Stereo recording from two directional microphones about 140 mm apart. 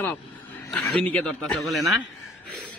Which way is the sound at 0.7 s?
5° left (ahead or behind).